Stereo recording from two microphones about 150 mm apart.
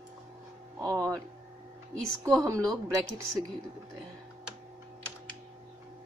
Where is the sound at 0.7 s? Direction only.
20° right (ahead or behind).